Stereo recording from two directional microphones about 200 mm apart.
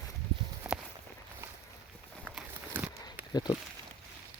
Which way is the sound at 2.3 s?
5° left (ahead or behind).